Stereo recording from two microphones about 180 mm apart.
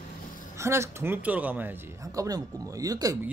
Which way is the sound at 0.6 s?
15° right (ahead or behind).